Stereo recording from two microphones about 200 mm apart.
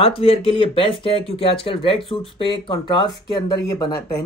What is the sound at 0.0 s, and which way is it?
Speech, 30° left (ahead or behind).